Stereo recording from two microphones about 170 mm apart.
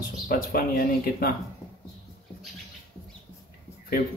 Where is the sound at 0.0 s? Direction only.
55° left (ahead or behind).